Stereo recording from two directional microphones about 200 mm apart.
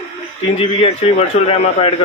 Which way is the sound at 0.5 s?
25° left (ahead or behind).